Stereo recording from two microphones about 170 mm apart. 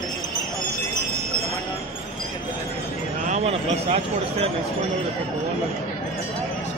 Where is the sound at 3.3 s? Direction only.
40° right (ahead or behind).